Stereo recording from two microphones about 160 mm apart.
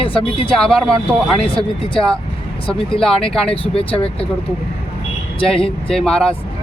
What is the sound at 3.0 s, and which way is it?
Speech, 5° left (ahead or behind).